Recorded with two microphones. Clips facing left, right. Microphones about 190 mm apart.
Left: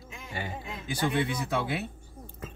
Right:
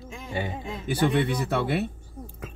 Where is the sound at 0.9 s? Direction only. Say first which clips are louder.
Right 5 dB; 60° right (ahead or behind).